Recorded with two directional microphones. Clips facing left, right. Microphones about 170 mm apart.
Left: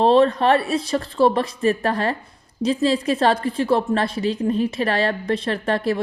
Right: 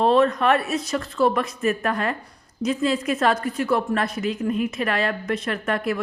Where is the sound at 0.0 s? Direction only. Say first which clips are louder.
Left 3 dB; 30° left (ahead or behind).